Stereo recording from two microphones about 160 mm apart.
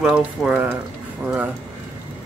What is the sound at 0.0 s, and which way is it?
Speech, 5° right (ahead or behind).